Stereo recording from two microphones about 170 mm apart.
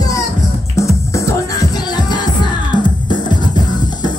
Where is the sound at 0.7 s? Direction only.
20° left (ahead or behind).